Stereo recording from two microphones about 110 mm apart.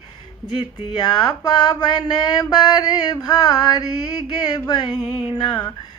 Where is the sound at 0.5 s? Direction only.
40° left (ahead or behind).